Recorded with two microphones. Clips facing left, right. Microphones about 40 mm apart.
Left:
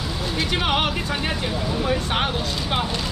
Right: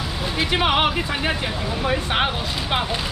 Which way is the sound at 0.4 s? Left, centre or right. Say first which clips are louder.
Right 3 dB; centre.